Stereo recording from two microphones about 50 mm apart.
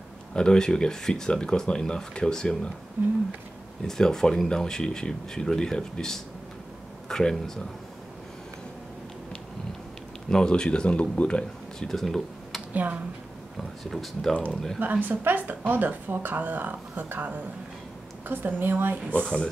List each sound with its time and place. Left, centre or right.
0.3 s speech: centre
3.0 s speech: right
3.8 s speech: centre
10.3 s speech: centre
11.9 s a sound: centre
12.7 s speech: right
13.6 s speech: centre
14.8 s speech: right
19.2 s speech: centre